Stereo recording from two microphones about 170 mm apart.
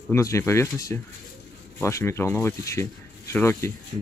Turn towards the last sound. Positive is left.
turn(degrees=15)  # may be behind; listen again after turning